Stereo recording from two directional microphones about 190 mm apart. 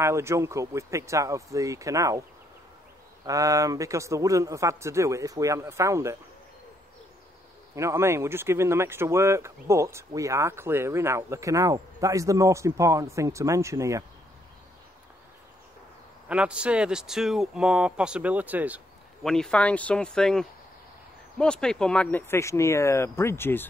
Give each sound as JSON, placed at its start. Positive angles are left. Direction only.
{"t": 0.0, "sound": "speech", "side_deg": -15}
{"t": 3.3, "sound": "speech", "side_deg": -15}
{"t": 7.7, "sound": "speech", "side_deg": -15}
{"t": 16.3, "sound": "speech", "side_deg": -5}
{"t": 19.2, "sound": "speech", "side_deg": 5}